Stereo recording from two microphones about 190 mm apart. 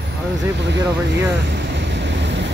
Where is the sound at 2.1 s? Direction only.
70° right (ahead or behind).